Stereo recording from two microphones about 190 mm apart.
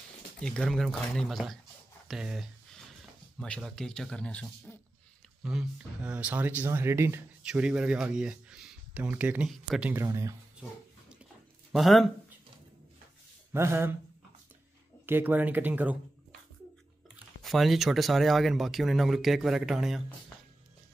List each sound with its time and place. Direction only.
0.4 s speech: 5° left (ahead or behind); by 10.3 s 15° right (ahead or behind)
11.7 s speech: centre (ahead or behind)
13.5 s speech: 15° right (ahead or behind)
15.0 s speech: 10° right (ahead or behind)
17.4 s speech: centre (ahead or behind)